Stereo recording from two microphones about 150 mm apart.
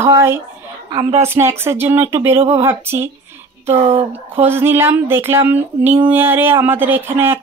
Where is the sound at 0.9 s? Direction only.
30° right (ahead or behind).